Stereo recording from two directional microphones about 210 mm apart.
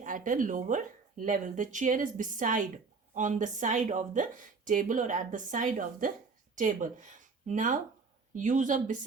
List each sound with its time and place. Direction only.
0.0 s a woman's voice: 40° right (ahead or behind)